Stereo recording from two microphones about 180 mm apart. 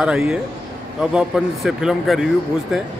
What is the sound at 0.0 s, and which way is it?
A man's voice, 5° right (ahead or behind).